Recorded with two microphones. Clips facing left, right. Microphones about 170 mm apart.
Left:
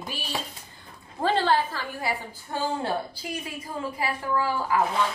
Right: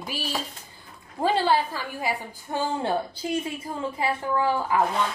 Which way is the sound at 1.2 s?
10° right (ahead or behind).